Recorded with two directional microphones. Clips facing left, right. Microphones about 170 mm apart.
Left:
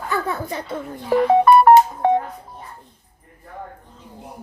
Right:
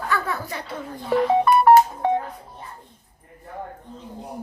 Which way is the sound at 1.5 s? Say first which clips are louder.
Left 7 dB; 55° left (ahead or behind).